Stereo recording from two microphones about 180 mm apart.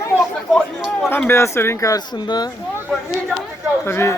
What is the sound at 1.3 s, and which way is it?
A man's voice, 15° left (ahead or behind).